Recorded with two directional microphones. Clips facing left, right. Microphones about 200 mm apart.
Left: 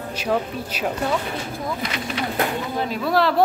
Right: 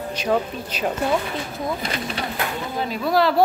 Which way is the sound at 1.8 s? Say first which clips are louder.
Even; 35° right (ahead or behind).